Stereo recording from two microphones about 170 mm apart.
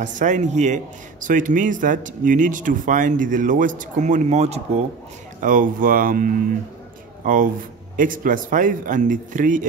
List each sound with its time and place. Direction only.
0.0 s speech: 45° right (ahead or behind)
5.4 s speech: 50° right (ahead or behind)